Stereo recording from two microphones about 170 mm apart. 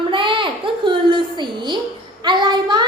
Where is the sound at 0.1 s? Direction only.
30° right (ahead or behind).